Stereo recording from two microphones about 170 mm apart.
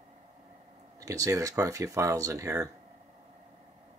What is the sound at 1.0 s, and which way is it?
Speech, 20° right (ahead or behind).